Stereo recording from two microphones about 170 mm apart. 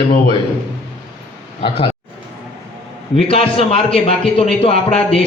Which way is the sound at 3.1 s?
35° left (ahead or behind).